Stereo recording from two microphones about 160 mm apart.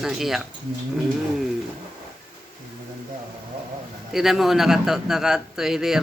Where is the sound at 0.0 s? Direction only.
Centre (ahead or behind).